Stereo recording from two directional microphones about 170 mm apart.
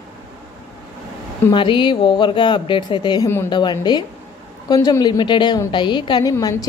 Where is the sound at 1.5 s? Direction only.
30° left (ahead or behind).